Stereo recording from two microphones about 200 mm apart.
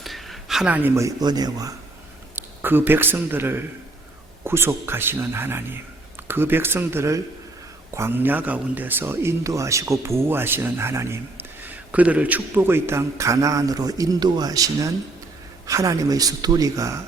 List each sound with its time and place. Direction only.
0.0 s a man's voice: centre (ahead or behind); by 17.0 s 15° right (ahead or behind)